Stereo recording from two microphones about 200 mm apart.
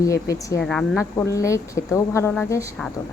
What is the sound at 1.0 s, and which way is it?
Speech, 15° left (ahead or behind).